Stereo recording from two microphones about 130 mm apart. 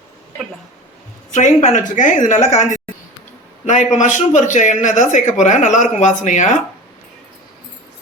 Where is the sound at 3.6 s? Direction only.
75° left (ahead or behind).